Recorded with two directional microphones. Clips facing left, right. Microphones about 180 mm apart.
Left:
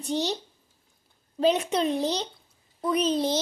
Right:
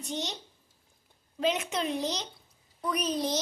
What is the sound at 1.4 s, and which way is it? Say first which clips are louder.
A child's voice: left 6 dB; 35° left (ahead or behind).